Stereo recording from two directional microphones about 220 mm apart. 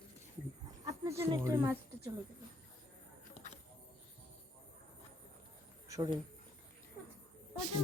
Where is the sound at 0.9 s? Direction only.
15° right (ahead or behind).